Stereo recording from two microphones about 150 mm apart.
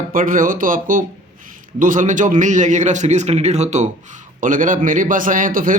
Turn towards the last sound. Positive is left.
turn(degrees=-65)  # may be behind; listen again after turning